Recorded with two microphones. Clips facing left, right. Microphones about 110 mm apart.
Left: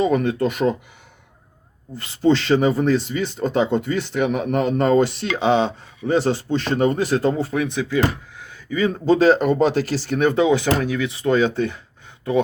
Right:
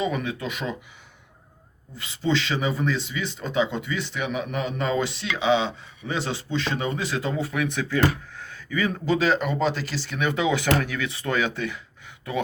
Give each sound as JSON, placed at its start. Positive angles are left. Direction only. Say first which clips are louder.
{"t": 0.0, "sound": "speech", "louder": "left 8 dB", "side_deg": 50}
{"t": 2.0, "sound": "speech", "louder": "left 7 dB", "side_deg": 50}
{"t": 7.4, "sound": "speech", "louder": "left 4 dB", "side_deg": 30}
{"t": 7.7, "sound": "speech", "louder": "left 2 dB", "side_deg": 15}